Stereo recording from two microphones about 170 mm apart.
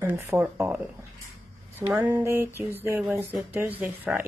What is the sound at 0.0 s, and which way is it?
Speech, 15° right (ahead or behind).